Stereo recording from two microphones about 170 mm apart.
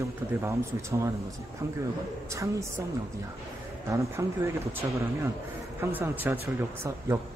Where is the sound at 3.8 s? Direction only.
15° right (ahead or behind).